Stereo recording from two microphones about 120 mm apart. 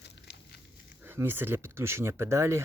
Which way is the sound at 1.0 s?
15° right (ahead or behind).